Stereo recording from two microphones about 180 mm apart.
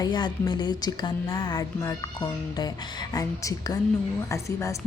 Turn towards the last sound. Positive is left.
turn(degrees=15)  # may be behind; listen again after turning